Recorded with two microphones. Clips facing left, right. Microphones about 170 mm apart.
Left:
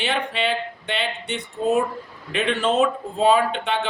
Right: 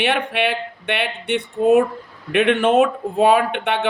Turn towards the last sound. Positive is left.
turn(degrees=-60)  # may be behind; listen again after turning